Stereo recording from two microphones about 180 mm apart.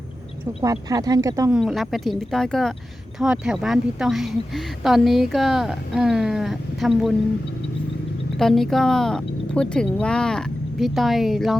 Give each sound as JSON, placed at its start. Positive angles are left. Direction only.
{"t": 0.6, "sound": "speech", "side_deg": -20}
{"t": 1.5, "sound": "a woman's voice", "side_deg": 0}
{"t": 8.4, "sound": "a woman's voice", "side_deg": 0}